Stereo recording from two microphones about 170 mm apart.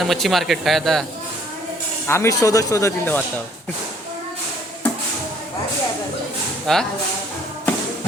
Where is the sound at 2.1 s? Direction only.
15° left (ahead or behind).